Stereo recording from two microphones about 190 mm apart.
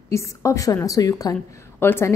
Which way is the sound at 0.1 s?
15° left (ahead or behind).